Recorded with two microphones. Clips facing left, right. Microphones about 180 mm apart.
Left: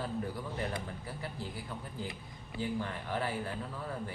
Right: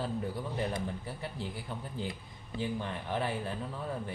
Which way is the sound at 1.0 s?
25° right (ahead or behind).